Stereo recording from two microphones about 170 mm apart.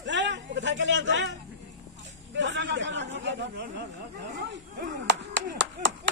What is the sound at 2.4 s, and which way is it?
A man's voice, 90° right.